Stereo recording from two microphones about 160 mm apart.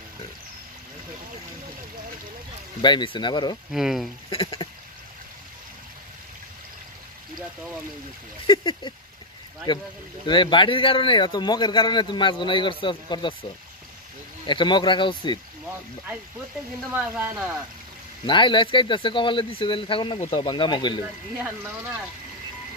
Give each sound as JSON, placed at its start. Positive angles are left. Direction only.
{"t": 2.8, "sound": "a man's voice", "side_deg": 30}
{"t": 3.7, "sound": "speech", "side_deg": 0}
{"t": 4.3, "sound": "speech", "side_deg": 35}
{"t": 8.5, "sound": "a man's voice", "side_deg": 30}
{"t": 16.9, "sound": "speech", "side_deg": -10}
{"t": 18.2, "sound": "a man's voice", "side_deg": 30}